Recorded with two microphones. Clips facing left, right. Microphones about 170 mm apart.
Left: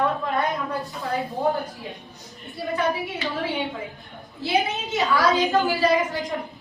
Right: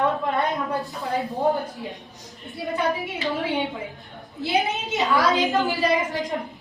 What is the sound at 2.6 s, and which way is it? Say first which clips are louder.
Speech: even; 20° right (ahead or behind).